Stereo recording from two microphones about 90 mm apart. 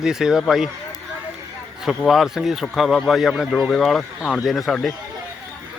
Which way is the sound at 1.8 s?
5° right (ahead or behind).